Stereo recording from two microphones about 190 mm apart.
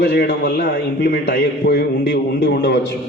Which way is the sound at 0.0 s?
55° left (ahead or behind).